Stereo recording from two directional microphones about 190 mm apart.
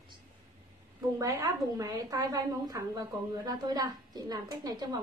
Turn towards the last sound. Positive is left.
turn(degrees=-20)  # may be behind; listen again after turning